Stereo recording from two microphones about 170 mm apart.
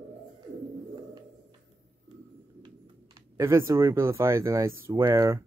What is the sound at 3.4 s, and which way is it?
Speech, 15° right (ahead or behind).